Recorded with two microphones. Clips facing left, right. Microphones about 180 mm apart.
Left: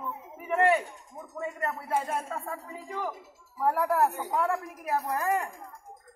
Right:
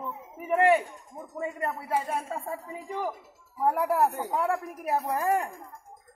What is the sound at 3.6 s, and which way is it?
A man's voice, 15° right (ahead or behind).